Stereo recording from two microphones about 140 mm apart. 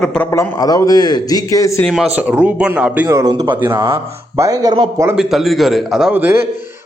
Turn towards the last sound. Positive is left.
turn(degrees=-15)  # may be behind; listen again after turning